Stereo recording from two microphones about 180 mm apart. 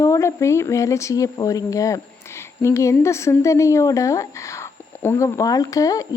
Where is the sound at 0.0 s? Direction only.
15° left (ahead or behind).